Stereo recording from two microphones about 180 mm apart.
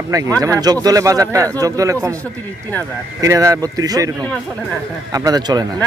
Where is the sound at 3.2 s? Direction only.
15° right (ahead or behind).